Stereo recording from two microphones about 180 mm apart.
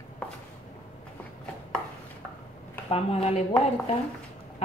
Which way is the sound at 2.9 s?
35° left (ahead or behind).